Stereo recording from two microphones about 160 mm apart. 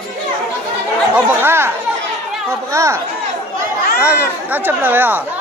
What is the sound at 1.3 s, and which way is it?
Speech, 15° right (ahead or behind).